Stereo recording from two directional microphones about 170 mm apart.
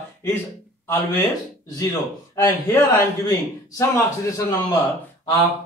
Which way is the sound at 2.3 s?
15° left (ahead or behind).